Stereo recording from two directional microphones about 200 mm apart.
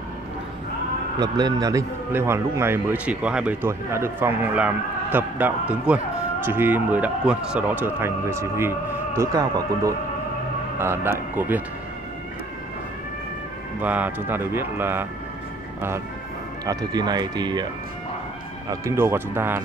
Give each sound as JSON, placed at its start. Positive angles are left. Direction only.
{"t": 1.2, "sound": "speech", "side_deg": -20}
{"t": 13.7, "sound": "speech", "side_deg": -10}
{"t": 16.6, "sound": "speech", "side_deg": -20}
{"t": 18.7, "sound": "speech", "side_deg": -15}